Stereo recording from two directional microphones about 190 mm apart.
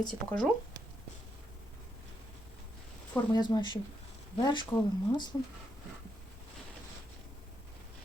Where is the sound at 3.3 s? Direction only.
20° left (ahead or behind).